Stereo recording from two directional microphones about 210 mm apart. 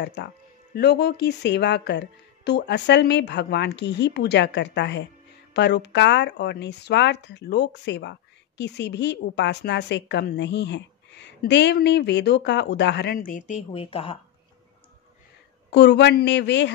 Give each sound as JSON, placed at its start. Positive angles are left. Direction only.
{"t": 0.0, "sound": "a woman's voice", "side_deg": 55}
{"t": 13.7, "sound": "speech", "side_deg": 25}
{"t": 15.7, "sound": "a woman's voice", "side_deg": 55}